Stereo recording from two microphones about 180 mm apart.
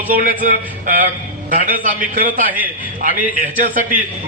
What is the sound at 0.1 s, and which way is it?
A man's voice, 50° right (ahead or behind).